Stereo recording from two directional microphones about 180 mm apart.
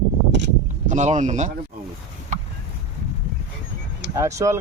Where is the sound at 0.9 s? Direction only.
40° right (ahead or behind).